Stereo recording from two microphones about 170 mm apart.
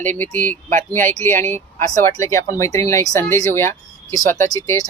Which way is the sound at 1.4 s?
15° left (ahead or behind).